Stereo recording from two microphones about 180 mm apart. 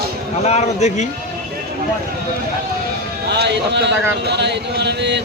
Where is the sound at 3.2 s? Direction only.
70° right (ahead or behind).